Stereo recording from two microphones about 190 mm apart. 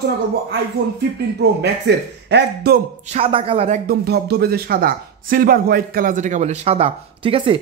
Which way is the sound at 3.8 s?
55° right (ahead or behind).